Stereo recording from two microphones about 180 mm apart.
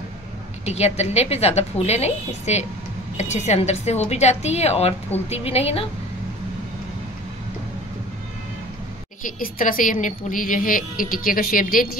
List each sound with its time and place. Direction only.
0.7 s a woman's voice: 35° left (ahead or behind)
9.2 s speech: 50° left (ahead or behind)